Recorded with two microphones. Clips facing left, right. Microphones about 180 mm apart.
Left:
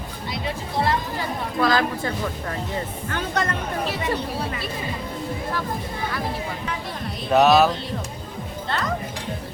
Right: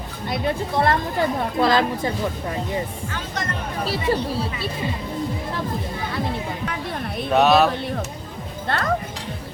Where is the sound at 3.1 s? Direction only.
60° left (ahead or behind).